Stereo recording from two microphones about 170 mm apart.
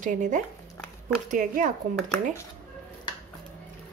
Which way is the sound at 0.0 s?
50° right (ahead or behind).